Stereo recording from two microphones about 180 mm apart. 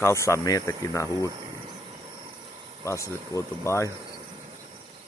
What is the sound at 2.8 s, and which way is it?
Speech, 15° left (ahead or behind).